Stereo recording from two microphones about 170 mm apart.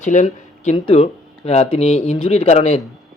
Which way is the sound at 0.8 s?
35° left (ahead or behind).